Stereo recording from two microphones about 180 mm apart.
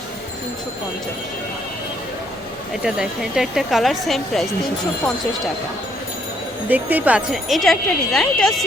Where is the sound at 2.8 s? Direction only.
5° right (ahead or behind).